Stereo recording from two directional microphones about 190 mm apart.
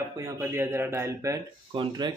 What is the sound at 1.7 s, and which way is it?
Speech, 25° right (ahead or behind).